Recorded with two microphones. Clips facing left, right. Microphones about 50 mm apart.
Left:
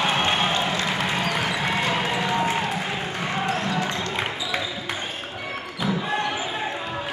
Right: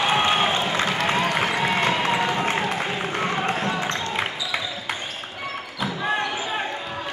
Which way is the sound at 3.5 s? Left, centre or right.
Centre.